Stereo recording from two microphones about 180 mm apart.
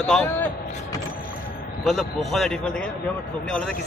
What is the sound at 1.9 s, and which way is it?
Speech, centre (ahead or behind).